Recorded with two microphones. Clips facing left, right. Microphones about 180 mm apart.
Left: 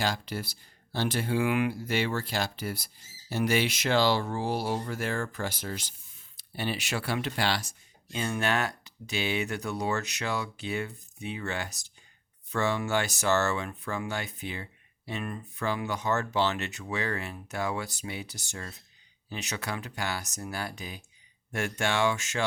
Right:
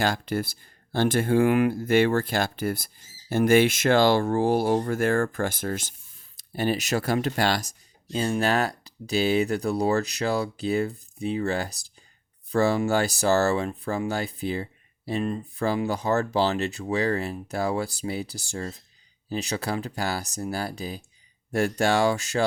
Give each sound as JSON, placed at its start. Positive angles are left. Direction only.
{"t": 0.0, "sound": "speech", "side_deg": -50}